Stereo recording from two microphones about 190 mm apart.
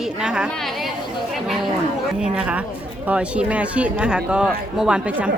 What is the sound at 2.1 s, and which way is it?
Speech, 5° right (ahead or behind).